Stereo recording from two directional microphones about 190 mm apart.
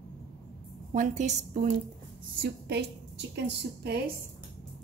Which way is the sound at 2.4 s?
60° right (ahead or behind).